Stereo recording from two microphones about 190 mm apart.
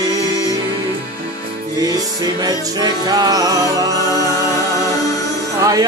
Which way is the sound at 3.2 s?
20° right (ahead or behind).